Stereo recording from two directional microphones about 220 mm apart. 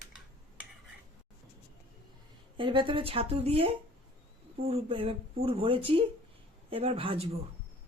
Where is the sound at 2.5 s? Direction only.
20° right (ahead or behind).